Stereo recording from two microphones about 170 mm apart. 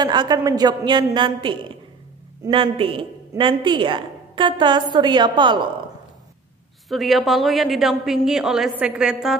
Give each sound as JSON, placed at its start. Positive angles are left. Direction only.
{"t": 0.0, "sound": "a woman's voice", "side_deg": -25}
{"t": 6.9, "sound": "a woman's voice", "side_deg": 0}